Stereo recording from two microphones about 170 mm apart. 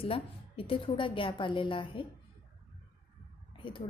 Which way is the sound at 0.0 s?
35° left (ahead or behind).